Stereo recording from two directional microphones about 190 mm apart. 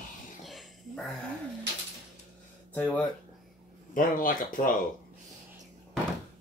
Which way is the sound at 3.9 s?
45° left (ahead or behind).